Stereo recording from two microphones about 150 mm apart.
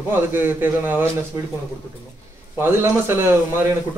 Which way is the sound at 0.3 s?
15° right (ahead or behind).